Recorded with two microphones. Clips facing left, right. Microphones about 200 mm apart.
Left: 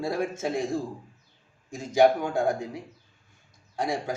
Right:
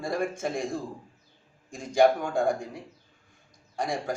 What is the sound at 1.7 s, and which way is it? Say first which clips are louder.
Speech: left 1 dB; 5° left (ahead or behind).